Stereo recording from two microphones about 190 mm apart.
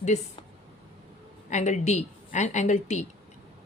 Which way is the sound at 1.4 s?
40° left (ahead or behind).